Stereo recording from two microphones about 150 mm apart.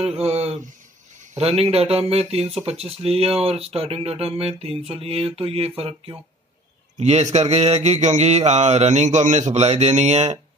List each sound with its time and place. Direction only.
0.0 s a sound: 45° right (ahead or behind)
1.4 s mantra: 40° right (ahead or behind)
2.6 s speech: 45° right (ahead or behind)
7.0 s mantra: 45° right (ahead or behind)